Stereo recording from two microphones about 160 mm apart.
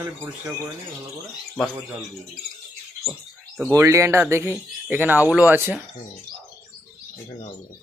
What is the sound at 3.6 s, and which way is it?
Speech, 15° right (ahead or behind).